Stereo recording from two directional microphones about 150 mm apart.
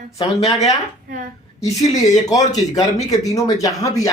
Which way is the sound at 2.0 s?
25° left (ahead or behind).